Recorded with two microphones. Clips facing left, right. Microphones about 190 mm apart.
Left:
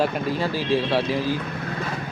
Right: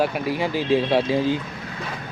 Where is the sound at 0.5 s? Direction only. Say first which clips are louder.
Right 4 dB; 20° right (ahead or behind).